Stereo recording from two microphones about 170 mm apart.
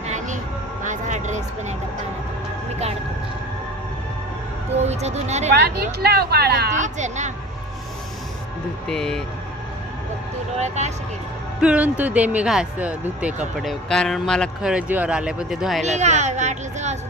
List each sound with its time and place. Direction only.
0.9 s a sound: 45° right (ahead or behind)
4.7 s speech: 40° right (ahead or behind)
5.5 s speech: 70° right (ahead or behind)
6.7 s a woman's voice: 45° right (ahead or behind)
8.9 s speech: 5° left (ahead or behind)
10.6 s speech: 40° right (ahead or behind)
11.6 s speech: 5° right (ahead or behind)
15.8 s a woman's voice: 40° right (ahead or behind)